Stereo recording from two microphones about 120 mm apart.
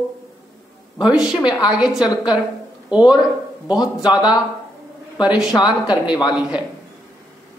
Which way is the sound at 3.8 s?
35° left (ahead or behind).